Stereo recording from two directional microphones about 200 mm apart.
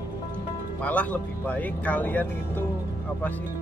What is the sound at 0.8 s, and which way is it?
Speech, 5° left (ahead or behind).